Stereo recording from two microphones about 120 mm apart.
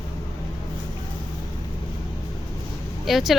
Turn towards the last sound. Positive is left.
turn(degrees=0)  # may be behind; listen again after turning